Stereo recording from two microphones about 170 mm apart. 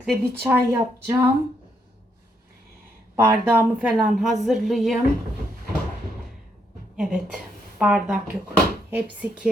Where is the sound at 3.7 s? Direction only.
5° right (ahead or behind).